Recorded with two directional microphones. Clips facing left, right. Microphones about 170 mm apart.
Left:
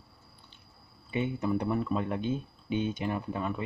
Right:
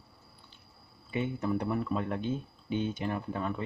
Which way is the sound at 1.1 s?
15° left (ahead or behind).